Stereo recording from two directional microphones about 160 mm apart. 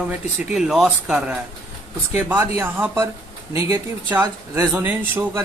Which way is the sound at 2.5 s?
15° right (ahead or behind).